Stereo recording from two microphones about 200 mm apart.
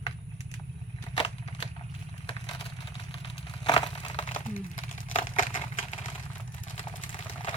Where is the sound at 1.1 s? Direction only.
25° left (ahead or behind).